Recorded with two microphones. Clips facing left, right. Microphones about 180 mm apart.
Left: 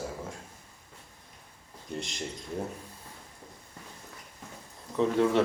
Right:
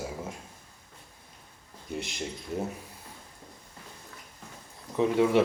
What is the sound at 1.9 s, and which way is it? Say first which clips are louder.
Speech: right 2 dB; 5° right (ahead or behind).